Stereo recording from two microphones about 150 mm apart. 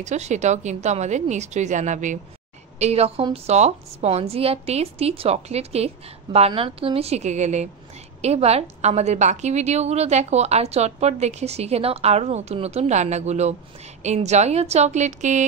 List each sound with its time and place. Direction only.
0.0 s a woman's voice: 50° right (ahead or behind)
2.8 s a woman's voice: 45° right (ahead or behind)